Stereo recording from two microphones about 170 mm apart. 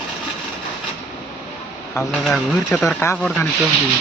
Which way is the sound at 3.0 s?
15° left (ahead or behind).